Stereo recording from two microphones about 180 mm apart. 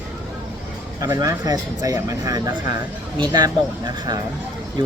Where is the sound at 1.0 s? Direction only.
15° right (ahead or behind).